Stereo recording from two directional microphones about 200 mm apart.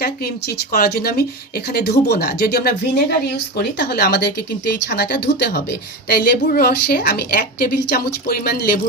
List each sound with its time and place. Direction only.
0.0 s a woman's voice: 50° left (ahead or behind)